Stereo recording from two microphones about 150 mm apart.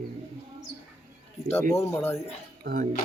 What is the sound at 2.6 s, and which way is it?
Speech, 75° right (ahead or behind).